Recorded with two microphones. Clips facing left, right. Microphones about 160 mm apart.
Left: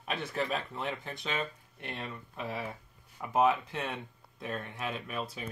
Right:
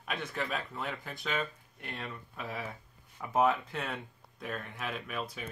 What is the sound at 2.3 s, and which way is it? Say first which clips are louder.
Speech: left 3 dB; 25° left (ahead or behind).